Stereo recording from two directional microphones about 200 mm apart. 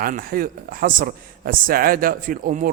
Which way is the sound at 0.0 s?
45° right (ahead or behind).